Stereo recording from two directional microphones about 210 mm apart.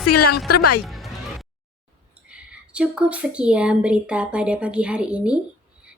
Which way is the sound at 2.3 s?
5° right (ahead or behind).